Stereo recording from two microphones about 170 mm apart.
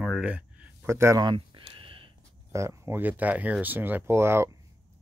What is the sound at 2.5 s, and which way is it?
Speech, 15° right (ahead or behind).